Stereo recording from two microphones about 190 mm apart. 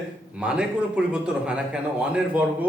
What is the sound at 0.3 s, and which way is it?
A man's voice, 5° right (ahead or behind).